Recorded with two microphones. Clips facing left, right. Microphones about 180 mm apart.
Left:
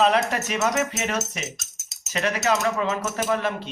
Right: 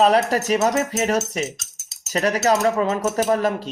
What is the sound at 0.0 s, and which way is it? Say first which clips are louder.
Speech: right 4 dB; 40° right (ahead or behind).